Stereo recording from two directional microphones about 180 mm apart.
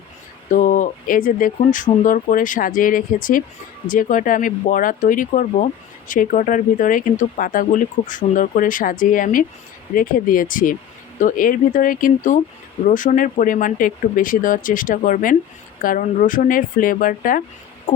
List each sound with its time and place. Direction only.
0.5 s speech: 45° left (ahead or behind)
17.9 s owl: 50° left (ahead or behind)